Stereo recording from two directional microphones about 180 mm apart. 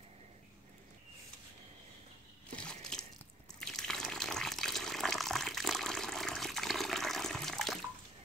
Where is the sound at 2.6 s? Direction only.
5° left (ahead or behind).